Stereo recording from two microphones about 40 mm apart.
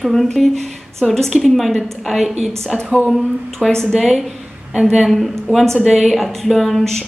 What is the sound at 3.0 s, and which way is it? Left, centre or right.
A woman's voice, centre.